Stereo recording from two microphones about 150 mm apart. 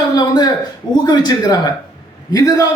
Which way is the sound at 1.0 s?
25° left (ahead or behind).